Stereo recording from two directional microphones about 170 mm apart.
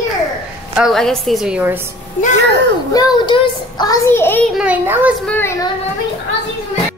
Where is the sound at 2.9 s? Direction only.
25° left (ahead or behind).